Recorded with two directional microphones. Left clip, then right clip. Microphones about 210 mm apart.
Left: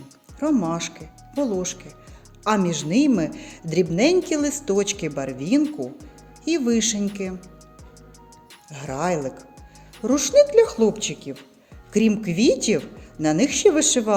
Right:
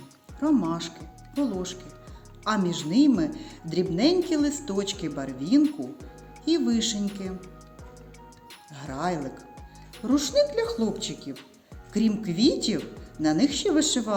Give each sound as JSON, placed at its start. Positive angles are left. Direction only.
{"t": 0.3, "sound": "speech", "side_deg": 30}
{"t": 5.6, "sound": "speech", "side_deg": 0}
{"t": 6.4, "sound": "speech", "side_deg": 35}
{"t": 8.7, "sound": "speech", "side_deg": 35}